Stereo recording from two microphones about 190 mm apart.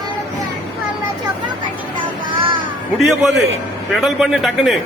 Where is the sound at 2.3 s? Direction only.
25° right (ahead or behind).